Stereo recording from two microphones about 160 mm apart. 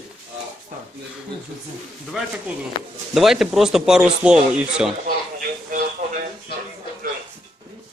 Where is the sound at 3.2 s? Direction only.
Centre (ahead or behind).